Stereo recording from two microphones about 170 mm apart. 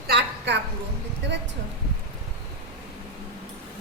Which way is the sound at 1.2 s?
90° right.